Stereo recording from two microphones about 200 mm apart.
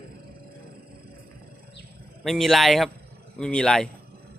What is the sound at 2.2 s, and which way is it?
Speech, centre (ahead or behind).